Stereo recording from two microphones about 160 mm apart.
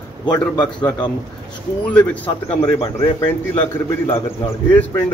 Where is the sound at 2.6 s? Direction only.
25° left (ahead or behind).